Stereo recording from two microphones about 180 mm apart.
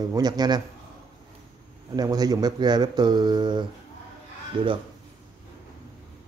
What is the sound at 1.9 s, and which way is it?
Speech, 20° right (ahead or behind).